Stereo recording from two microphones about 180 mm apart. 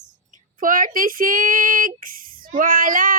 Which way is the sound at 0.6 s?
50° right (ahead or behind).